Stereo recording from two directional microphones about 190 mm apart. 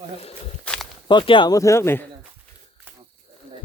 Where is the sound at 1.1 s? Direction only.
25° left (ahead or behind).